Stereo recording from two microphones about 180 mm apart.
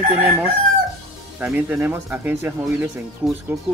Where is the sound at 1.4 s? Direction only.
10° right (ahead or behind).